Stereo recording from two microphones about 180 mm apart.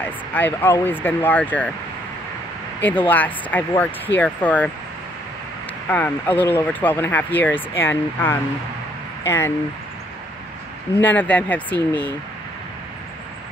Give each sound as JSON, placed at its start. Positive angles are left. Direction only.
{"t": 0.3, "sound": "speech", "side_deg": 10}
{"t": 2.8, "sound": "speech", "side_deg": 10}
{"t": 5.9, "sound": "speech", "side_deg": 10}
{"t": 11.0, "sound": "speech", "side_deg": 10}